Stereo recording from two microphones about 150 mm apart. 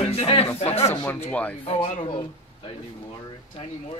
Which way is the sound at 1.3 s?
10° left (ahead or behind).